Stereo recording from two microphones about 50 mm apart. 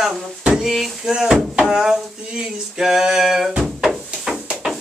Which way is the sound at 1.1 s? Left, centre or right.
Centre.